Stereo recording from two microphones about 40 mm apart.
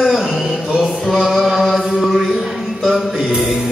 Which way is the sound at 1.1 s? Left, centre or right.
Centre.